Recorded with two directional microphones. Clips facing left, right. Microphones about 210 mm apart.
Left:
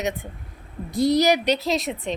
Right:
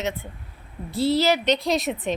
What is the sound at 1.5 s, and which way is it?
Speech, centre (ahead or behind).